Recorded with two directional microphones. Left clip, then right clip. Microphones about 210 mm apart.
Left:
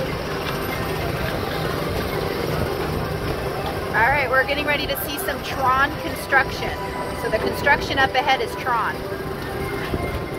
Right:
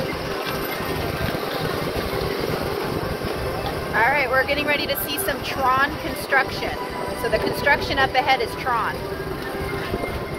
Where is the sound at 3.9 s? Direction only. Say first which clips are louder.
Left 1 dB; 5° right (ahead or behind).